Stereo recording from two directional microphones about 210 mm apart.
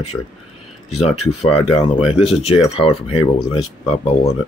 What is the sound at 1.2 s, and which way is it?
Speech, 90° left.